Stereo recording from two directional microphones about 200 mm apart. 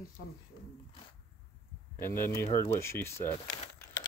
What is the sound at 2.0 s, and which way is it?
Speech, 10° left (ahead or behind).